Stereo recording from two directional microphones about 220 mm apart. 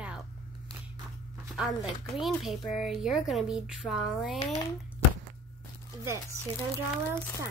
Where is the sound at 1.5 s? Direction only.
Centre (ahead or behind).